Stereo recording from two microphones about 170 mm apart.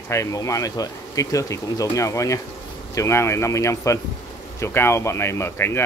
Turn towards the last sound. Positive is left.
turn(degrees=15)  # may be behind; listen again after turning